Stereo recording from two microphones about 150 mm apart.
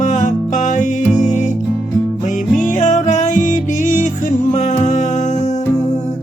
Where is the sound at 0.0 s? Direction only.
55° left (ahead or behind).